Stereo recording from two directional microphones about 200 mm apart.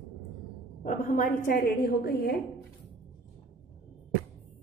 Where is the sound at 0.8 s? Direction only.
40° left (ahead or behind).